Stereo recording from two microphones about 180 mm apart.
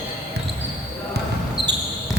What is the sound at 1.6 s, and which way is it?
Basketball bounce, 30° right (ahead or behind).